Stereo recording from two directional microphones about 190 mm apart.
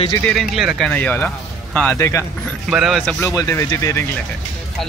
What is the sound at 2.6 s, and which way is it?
Speech, 5° right (ahead or behind).